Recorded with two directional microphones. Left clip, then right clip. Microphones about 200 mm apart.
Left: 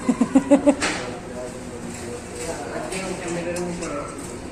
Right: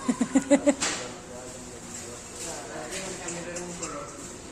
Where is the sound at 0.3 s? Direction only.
30° right (ahead or behind).